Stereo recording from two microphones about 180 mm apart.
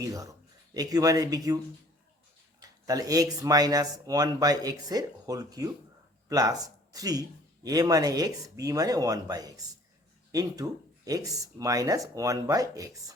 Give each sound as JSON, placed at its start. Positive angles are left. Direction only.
{"t": 0.0, "sound": "speech", "side_deg": -20}
{"t": 2.6, "sound": "speech", "side_deg": -20}